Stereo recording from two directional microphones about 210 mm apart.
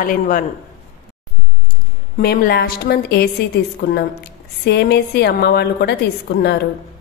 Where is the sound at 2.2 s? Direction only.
45° left (ahead or behind).